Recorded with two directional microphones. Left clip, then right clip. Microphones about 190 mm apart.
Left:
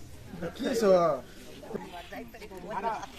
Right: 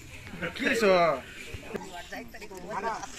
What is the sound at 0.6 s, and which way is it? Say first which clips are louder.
Speech: right 3 dB; 10° left (ahead or behind).